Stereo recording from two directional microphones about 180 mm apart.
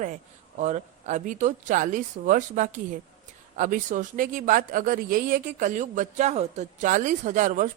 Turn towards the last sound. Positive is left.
turn(degrees=-45)  # may be behind; listen again after turning